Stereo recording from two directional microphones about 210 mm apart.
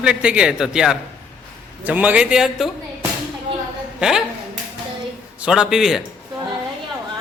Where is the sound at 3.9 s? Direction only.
5° right (ahead or behind).